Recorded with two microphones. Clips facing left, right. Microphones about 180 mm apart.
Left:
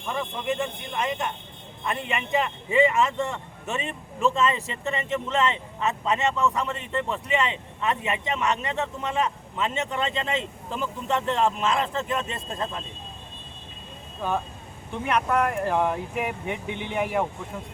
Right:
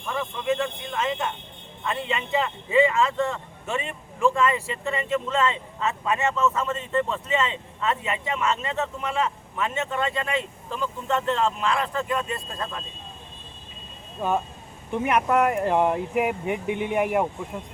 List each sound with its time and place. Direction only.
0.1 s speech: 20° left (ahead or behind)
14.2 s speech: 15° right (ahead or behind)